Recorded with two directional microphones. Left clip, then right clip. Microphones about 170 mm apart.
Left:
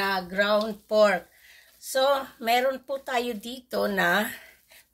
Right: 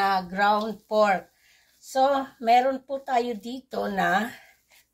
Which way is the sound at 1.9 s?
50° left (ahead or behind).